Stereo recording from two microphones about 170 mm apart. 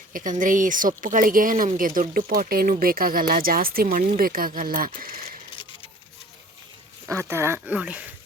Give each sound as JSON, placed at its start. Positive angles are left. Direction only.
{"t": 0.1, "sound": "speech", "side_deg": -50}
{"t": 7.1, "sound": "speech", "side_deg": -15}